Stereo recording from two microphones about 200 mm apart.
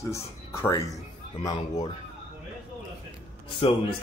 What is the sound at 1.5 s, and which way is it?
Speech, 30° left (ahead or behind).